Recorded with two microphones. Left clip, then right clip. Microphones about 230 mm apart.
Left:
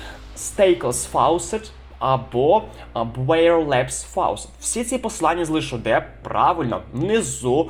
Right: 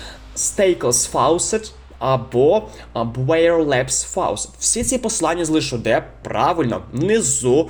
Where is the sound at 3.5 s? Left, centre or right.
Right.